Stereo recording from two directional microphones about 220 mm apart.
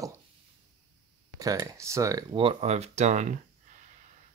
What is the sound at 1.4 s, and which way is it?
Speech, 15° right (ahead or behind).